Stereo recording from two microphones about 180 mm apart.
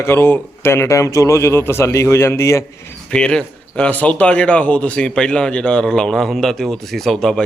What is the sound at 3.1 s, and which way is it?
Speech, 5° left (ahead or behind).